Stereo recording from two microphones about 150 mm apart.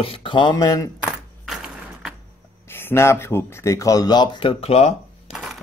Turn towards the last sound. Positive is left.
turn(degrees=0)  # may be behind; listen again after turning